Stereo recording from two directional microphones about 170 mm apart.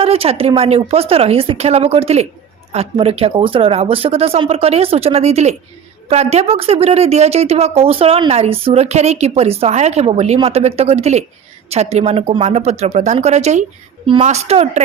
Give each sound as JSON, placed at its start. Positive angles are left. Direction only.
{"t": 0.0, "sound": "speech", "side_deg": -35}